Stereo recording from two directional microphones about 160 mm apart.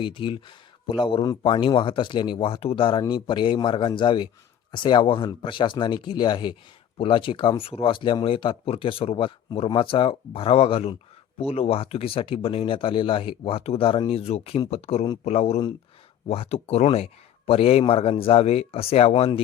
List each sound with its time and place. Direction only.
0.0 s speech: 30° left (ahead or behind)